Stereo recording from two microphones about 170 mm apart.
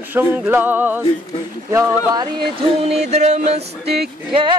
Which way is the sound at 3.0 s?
40° right (ahead or behind).